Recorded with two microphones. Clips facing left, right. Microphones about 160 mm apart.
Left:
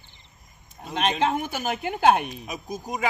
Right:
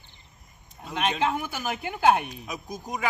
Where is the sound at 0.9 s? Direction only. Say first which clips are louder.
Left 2 dB; 25° left (ahead or behind).